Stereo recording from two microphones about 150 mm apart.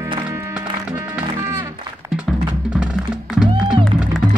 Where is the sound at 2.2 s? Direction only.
5° right (ahead or behind).